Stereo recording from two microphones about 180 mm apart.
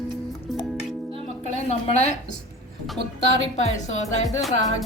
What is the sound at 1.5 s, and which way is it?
Speech, 40° left (ahead or behind).